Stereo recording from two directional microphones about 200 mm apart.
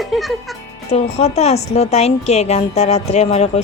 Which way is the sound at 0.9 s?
30° left (ahead or behind).